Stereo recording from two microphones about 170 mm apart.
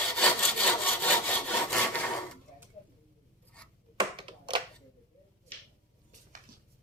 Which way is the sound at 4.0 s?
25° right (ahead or behind).